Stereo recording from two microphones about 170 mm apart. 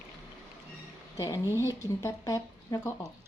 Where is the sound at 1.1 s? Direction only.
20° left (ahead or behind).